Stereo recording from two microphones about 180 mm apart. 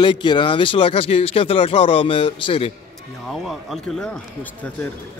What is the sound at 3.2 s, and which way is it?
Speech, centre (ahead or behind).